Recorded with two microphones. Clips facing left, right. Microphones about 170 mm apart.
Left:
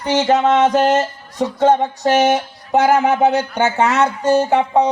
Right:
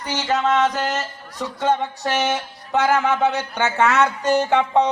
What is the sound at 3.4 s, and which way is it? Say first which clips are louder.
Jingle bell: left 3 dB; 15° left (ahead or behind).